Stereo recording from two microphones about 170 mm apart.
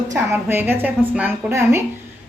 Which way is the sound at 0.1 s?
15° right (ahead or behind).